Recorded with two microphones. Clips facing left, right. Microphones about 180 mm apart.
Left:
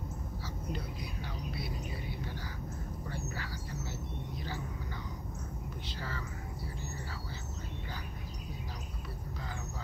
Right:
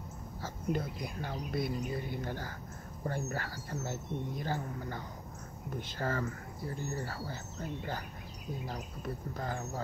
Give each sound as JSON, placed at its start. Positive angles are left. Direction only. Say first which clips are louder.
{"t": 0.4, "sound": "speech", "louder": "right 8 dB", "side_deg": -50}
{"t": 5.9, "sound": "speech", "louder": "right 10 dB", "side_deg": -50}